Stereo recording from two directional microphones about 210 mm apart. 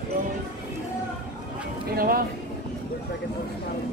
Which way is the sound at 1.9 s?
45° right (ahead or behind).